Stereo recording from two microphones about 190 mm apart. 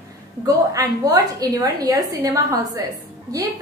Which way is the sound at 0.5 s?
15° right (ahead or behind).